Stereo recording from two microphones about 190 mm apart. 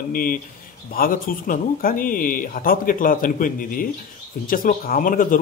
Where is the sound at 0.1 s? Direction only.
50° left (ahead or behind).